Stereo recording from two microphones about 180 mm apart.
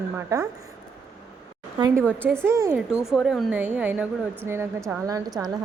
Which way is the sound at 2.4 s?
15° right (ahead or behind).